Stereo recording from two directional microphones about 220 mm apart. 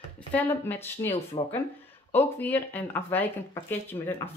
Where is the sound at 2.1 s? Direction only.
5° left (ahead or behind).